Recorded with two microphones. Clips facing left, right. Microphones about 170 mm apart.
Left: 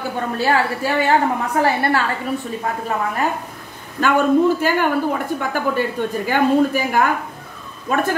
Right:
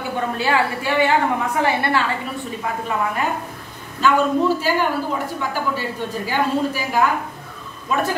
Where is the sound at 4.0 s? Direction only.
55° left (ahead or behind).